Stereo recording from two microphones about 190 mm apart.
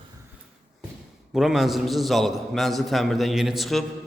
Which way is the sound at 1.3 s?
Centre (ahead or behind).